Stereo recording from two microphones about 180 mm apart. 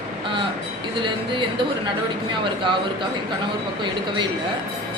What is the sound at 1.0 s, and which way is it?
Speech, 25° right (ahead or behind).